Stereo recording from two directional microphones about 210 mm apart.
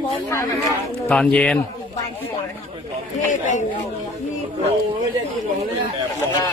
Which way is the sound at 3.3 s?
35° left (ahead or behind).